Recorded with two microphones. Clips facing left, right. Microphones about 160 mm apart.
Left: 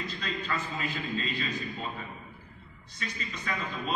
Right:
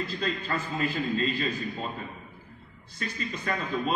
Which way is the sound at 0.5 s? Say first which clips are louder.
Right 4 dB; 50° right (ahead or behind).